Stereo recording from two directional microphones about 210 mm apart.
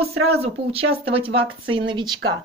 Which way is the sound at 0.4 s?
25° right (ahead or behind).